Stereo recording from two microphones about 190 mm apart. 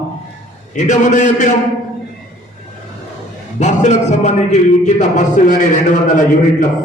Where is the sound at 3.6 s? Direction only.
40° left (ahead or behind).